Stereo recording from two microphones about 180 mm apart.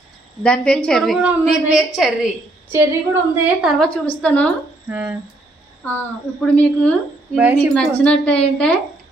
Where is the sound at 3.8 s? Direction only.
5° left (ahead or behind).